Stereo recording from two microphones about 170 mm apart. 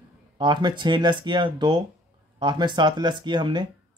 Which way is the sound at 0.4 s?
25° right (ahead or behind).